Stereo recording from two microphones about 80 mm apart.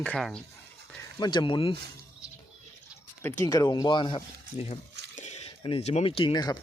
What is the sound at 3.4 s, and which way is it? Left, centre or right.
Speech, left.